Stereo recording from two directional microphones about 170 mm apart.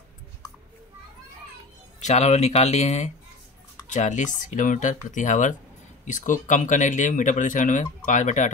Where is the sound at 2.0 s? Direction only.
40° left (ahead or behind).